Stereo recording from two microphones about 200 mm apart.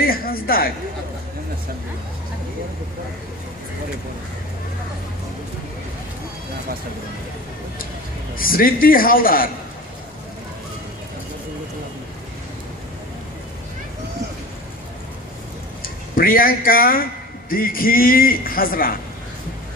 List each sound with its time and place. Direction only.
0.0 s a man's voice: 45° left (ahead or behind)
8.4 s a man's voice: 45° left (ahead or behind)
15.8 s a man's voice: 45° left (ahead or behind)